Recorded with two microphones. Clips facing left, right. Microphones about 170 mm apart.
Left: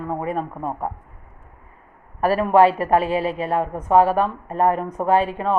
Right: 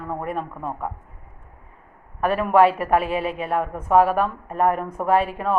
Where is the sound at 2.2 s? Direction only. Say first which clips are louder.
Left 2 dB; 35° left (ahead or behind).